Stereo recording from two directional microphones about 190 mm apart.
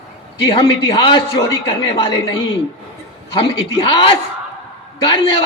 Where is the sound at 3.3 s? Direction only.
25° left (ahead or behind).